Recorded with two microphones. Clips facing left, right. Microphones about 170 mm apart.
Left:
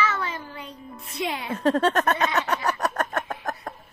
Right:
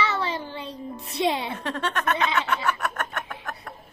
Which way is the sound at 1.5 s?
40° left (ahead or behind).